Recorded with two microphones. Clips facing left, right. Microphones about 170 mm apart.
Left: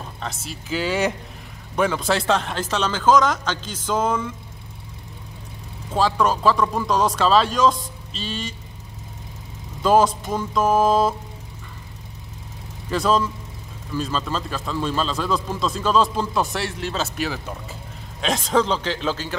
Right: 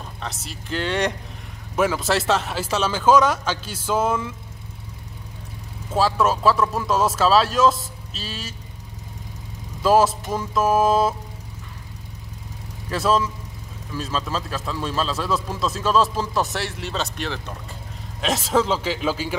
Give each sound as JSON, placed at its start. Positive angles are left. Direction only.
{"t": 0.2, "sound": "a man's voice", "side_deg": 0}
{"t": 5.9, "sound": "a man's voice", "side_deg": -5}
{"t": 9.8, "sound": "a man's voice", "side_deg": -5}
{"t": 12.9, "sound": "a man's voice", "side_deg": 0}